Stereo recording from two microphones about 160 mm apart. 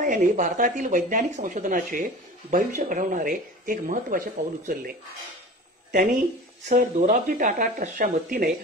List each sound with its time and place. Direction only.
0.0 s speech: 55° right (ahead or behind)
6.7 s speech: 55° right (ahead or behind)